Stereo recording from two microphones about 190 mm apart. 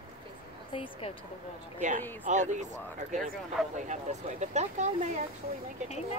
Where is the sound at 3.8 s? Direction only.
40° right (ahead or behind).